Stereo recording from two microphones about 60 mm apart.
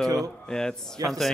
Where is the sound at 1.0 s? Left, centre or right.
Right.